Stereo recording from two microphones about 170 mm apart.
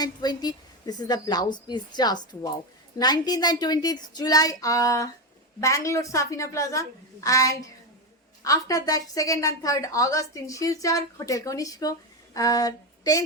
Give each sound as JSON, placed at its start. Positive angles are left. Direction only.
{"t": 0.0, "sound": "a woman's voice", "side_deg": 25}